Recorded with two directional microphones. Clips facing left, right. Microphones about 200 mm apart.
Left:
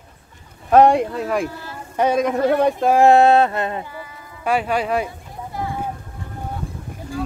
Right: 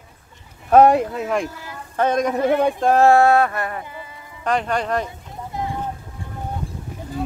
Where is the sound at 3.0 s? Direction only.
20° left (ahead or behind).